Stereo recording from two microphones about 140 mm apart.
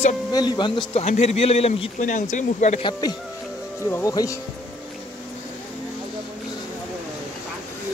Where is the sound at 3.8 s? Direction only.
15° left (ahead or behind).